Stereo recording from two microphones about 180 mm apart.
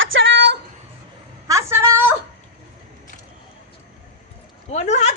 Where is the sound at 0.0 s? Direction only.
90° right.